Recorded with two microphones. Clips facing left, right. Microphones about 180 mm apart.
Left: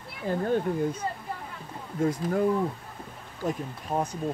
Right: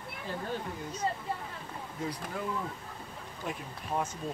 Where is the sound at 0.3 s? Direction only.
50° left (ahead or behind).